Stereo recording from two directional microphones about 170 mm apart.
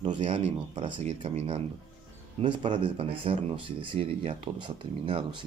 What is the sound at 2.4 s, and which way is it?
Speech, 30° right (ahead or behind).